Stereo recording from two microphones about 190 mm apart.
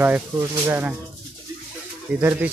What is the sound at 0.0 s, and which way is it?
Speech, 10° right (ahead or behind).